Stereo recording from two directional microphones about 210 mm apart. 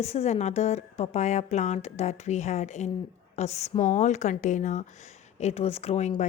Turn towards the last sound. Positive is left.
turn(degrees=35)  # may be behind; listen again after turning